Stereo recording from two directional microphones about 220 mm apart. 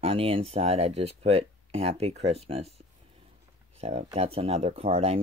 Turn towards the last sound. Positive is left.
turn(degrees=-25)  # may be behind; listen again after turning